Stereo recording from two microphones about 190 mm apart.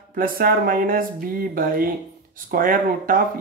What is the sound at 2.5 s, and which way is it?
Speech, 50° right (ahead or behind).